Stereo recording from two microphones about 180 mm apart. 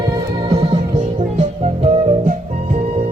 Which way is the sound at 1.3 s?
40° right (ahead or behind).